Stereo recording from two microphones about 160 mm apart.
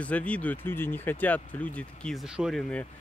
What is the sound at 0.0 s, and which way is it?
Speech, 10° left (ahead or behind).